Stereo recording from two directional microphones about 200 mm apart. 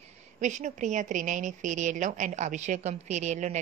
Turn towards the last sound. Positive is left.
turn(degrees=-35)  # may be behind; listen again after turning